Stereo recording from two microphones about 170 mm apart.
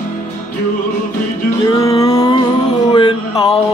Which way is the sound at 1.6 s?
20° left (ahead or behind).